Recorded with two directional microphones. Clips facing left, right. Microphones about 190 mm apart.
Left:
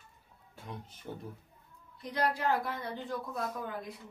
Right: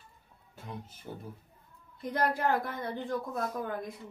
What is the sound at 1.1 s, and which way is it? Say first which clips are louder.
Speech: left 1 dB; 5° right (ahead or behind).